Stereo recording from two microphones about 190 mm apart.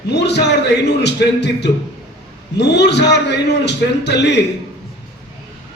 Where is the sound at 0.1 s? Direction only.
65° left (ahead or behind).